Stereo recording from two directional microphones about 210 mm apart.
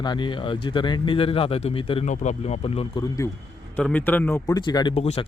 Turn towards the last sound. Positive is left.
turn(degrees=30)  # may be behind; listen again after turning